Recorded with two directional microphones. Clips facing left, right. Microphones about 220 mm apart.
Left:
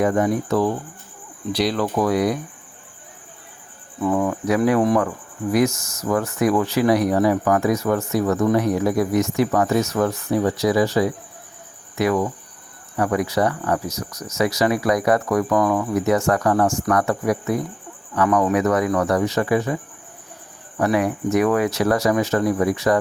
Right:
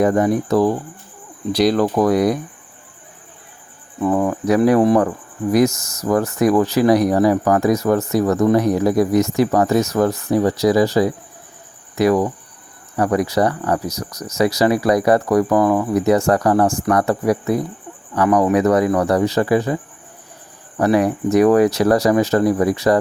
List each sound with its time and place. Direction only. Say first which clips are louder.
0.0 s speech: right 3 dB; 35° right (ahead or behind)
4.0 s speech: right 3 dB; 35° right (ahead or behind)
20.7 s speech: right 4 dB; 35° right (ahead or behind)